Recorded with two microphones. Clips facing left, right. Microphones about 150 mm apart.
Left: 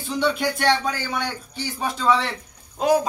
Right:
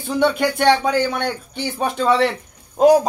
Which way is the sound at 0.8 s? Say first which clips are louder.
Right 7 dB; 60° right (ahead or behind).